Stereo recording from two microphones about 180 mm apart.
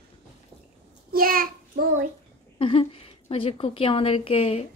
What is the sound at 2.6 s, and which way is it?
A woman's voice, 30° left (ahead or behind).